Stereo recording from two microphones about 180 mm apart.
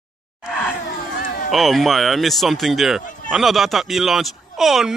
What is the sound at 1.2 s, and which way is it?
Cat, 50° left (ahead or behind).